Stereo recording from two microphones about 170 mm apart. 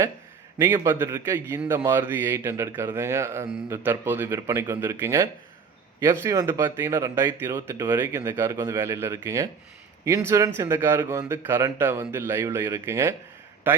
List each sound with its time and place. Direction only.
0.6 s a man's voice: 15° right (ahead or behind)